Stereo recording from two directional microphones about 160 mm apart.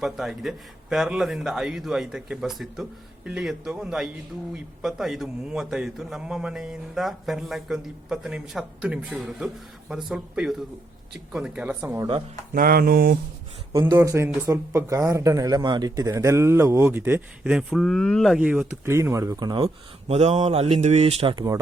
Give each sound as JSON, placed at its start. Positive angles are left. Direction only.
{"t": 0.0, "sound": "a man's voice", "side_deg": 0}
{"t": 12.5, "sound": "speech", "side_deg": -70}
{"t": 13.7, "sound": "speech", "side_deg": -25}
{"t": 18.9, "sound": "speech", "side_deg": -15}
{"t": 19.6, "sound": "speech", "side_deg": -40}